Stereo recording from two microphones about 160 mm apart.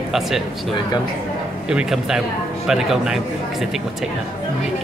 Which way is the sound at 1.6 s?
5° right (ahead or behind).